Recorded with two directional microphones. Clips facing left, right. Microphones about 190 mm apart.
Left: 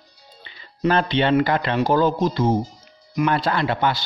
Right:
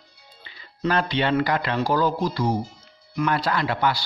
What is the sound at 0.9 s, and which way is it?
Speech, 25° left (ahead or behind).